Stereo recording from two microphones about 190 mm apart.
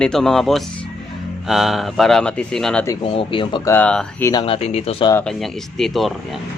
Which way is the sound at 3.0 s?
30° left (ahead or behind).